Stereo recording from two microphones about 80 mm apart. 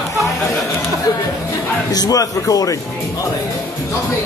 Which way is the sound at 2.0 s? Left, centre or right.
Left.